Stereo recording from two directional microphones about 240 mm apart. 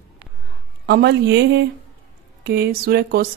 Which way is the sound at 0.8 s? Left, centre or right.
Right.